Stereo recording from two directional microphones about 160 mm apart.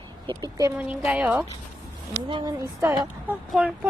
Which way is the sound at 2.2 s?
30° right (ahead or behind).